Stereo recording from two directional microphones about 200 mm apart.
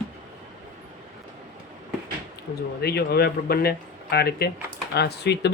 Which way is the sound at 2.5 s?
50° left (ahead or behind).